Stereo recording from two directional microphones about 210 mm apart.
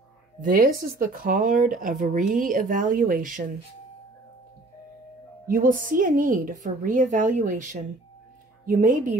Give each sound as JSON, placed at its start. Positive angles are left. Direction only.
{"t": 0.4, "sound": "speech", "side_deg": -40}
{"t": 5.5, "sound": "speech", "side_deg": -40}